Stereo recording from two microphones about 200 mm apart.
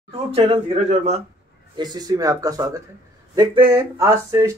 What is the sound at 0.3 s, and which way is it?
Speech, 30° right (ahead or behind).